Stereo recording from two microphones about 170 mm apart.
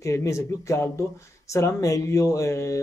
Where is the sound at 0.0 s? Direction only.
20° left (ahead or behind).